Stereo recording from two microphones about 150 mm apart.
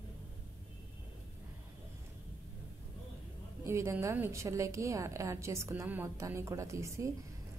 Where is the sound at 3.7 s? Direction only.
15° right (ahead or behind).